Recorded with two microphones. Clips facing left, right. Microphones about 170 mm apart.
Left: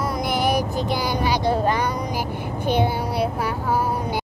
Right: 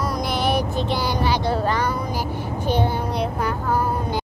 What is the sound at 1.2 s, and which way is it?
Child singing, 15° left (ahead or behind).